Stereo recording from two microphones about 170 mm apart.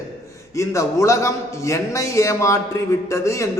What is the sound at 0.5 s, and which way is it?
A man's voice, 15° left (ahead or behind).